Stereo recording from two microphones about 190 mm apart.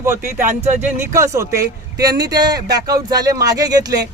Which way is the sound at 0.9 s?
15° right (ahead or behind).